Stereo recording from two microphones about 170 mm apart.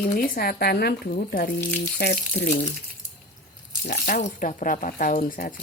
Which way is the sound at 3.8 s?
55° left (ahead or behind).